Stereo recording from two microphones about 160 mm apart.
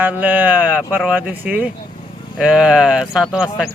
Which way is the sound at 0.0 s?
10° right (ahead or behind).